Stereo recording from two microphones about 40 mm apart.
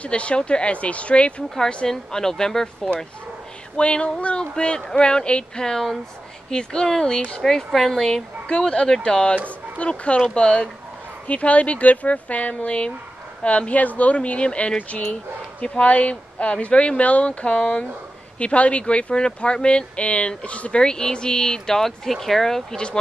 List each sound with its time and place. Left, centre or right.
0.0 s speech: left
1.9 s speech: centre
3.7 s speech: left
5.6 s speech: centre
7.4 s speech: centre
11.2 s speech: left
20.8 s speech: centre